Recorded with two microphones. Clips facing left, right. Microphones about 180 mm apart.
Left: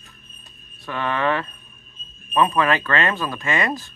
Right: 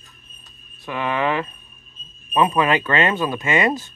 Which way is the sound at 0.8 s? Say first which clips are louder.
Right 1 dB; 15° right (ahead or behind).